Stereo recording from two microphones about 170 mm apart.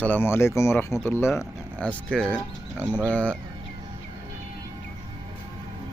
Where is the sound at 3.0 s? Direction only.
10° left (ahead or behind).